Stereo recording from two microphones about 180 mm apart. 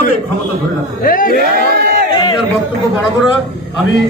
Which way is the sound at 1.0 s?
50° left (ahead or behind).